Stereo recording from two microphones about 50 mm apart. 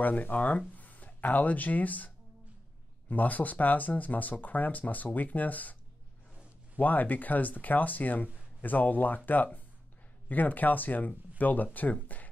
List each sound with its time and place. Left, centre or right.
0.0 s speech: left
6.8 s speech: left